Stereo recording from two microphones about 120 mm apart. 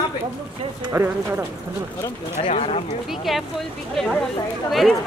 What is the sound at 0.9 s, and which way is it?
Speech, 20° right (ahead or behind).